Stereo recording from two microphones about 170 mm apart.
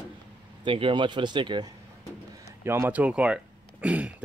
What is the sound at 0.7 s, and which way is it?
Speech, 30° right (ahead or behind).